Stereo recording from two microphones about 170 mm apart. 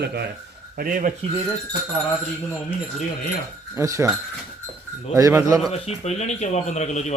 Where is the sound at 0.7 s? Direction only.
55° right (ahead or behind).